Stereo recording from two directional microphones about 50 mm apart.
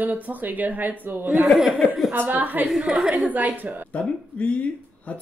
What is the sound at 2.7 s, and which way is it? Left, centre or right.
Speech, centre.